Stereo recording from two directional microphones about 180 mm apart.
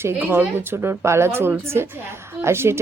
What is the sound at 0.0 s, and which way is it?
A woman's voice, 10° right (ahead or behind).